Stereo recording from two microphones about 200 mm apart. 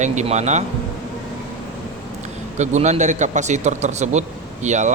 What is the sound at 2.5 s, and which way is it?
A man's voice, 35° right (ahead or behind).